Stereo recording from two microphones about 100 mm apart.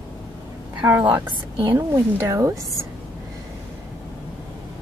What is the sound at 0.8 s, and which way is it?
A woman's voice, 20° right (ahead or behind).